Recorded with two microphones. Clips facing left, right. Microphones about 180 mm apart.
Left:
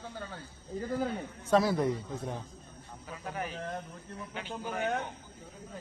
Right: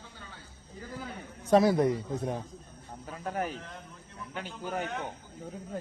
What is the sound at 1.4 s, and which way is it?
Speech, 20° right (ahead or behind).